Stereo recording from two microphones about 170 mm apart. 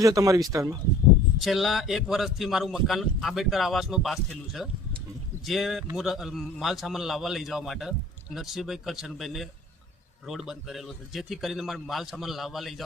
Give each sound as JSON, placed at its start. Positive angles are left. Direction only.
{"t": 0.0, "sound": "speech", "side_deg": -20}
{"t": 1.4, "sound": "a man's voice", "side_deg": 0}